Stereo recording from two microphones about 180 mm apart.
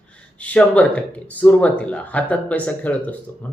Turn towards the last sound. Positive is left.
turn(degrees=10)  # may be behind; listen again after turning